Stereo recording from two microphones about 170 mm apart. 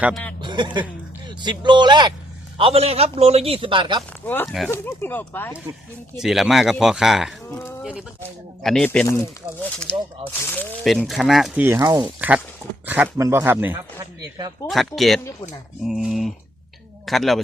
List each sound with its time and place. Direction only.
0.4 s a man's voice: 25° right (ahead or behind)
4.2 s speech: 10° left (ahead or behind)
6.1 s speech: centre (ahead or behind)
10.8 s speech: centre (ahead or behind)
11.6 s speech: 15° right (ahead or behind)
12.0 s speech: 10° right (ahead or behind)
14.7 s speech: centre (ahead or behind)